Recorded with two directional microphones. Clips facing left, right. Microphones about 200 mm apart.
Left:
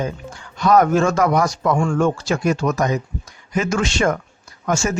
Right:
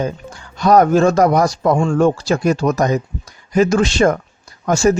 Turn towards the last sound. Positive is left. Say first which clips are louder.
# right 6 dB
turn(degrees=-35)  # may be behind; listen again after turning